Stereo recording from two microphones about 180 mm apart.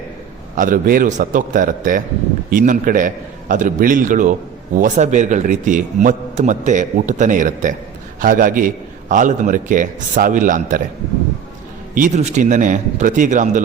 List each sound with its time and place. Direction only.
0.5 s a man's voice: 50° right (ahead or behind)
11.9 s a man's voice: 45° right (ahead or behind)